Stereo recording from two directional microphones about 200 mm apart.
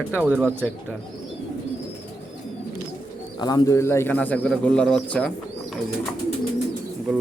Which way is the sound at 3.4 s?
20° left (ahead or behind).